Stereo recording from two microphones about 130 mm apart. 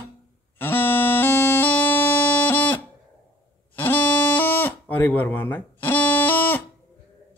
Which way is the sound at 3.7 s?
15° left (ahead or behind).